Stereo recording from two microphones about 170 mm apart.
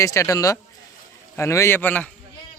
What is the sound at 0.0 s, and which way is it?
Speech, 20° left (ahead or behind).